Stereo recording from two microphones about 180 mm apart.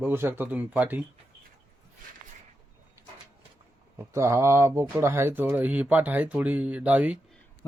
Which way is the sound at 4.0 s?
15° right (ahead or behind).